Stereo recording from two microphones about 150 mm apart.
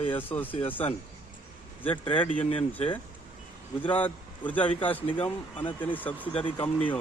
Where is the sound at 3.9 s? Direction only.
10° left (ahead or behind).